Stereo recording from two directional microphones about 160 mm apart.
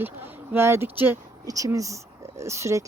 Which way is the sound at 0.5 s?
15° right (ahead or behind).